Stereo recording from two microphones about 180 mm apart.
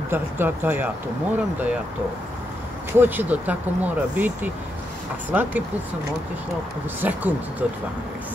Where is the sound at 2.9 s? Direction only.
10° right (ahead or behind).